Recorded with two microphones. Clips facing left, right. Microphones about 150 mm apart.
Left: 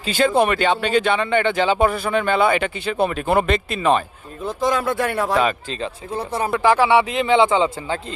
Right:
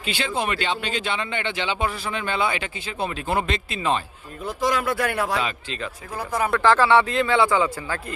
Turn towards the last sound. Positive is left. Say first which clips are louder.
# left 3 dB
turn(degrees=25)  # may be behind; listen again after turning